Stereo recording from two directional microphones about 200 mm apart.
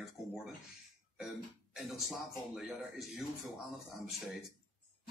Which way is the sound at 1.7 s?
Centre (ahead or behind).